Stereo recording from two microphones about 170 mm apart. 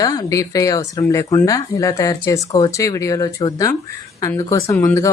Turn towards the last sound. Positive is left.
turn(degrees=20)  # may be behind; listen again after turning